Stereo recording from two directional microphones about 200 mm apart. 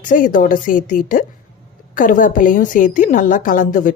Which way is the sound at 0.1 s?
40° left (ahead or behind).